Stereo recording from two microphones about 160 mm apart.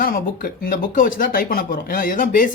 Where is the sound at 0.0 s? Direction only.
65° left (ahead or behind).